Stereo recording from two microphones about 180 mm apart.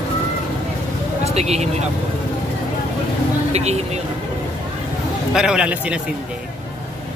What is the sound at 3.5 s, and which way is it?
Speech, 35° right (ahead or behind).